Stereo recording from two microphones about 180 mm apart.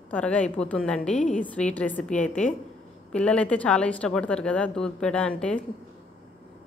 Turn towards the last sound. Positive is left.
turn(degrees=5)  # may be behind; listen again after turning